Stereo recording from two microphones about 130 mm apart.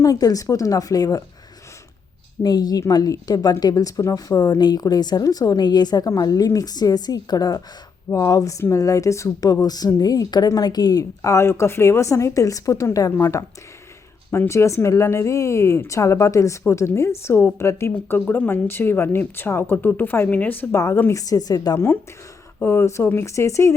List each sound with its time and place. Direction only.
0.0 s a woman's voice: 30° left (ahead or behind)
2.4 s a woman's voice: 30° left (ahead or behind)
22.6 s a woman's voice: 20° left (ahead or behind)